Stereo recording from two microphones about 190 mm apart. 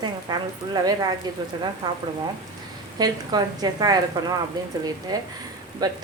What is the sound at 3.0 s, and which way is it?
Speech, 20° right (ahead or behind).